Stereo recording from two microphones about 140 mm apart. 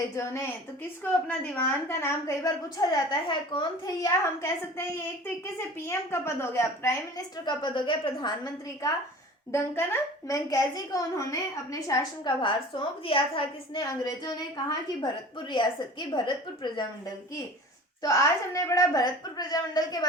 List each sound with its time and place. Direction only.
0.2 s a woman's voice: 20° left (ahead or behind)
2.9 s a woman's voice: 35° left (ahead or behind)
7.4 s a woman's voice: 35° left (ahead or behind)
9.5 s a woman's voice: 20° left (ahead or behind)
12.4 s a woman's voice: 35° left (ahead or behind)
13.8 s a woman's voice: 30° left (ahead or behind)
18.0 s a woman's voice: 25° left (ahead or behind)